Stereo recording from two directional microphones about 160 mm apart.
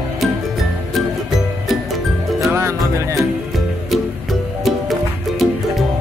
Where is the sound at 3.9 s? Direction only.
Centre (ahead or behind).